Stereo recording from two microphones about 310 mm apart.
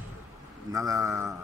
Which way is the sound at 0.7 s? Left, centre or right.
Centre.